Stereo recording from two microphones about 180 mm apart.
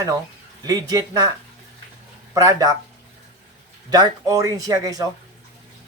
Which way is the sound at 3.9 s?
20° right (ahead or behind).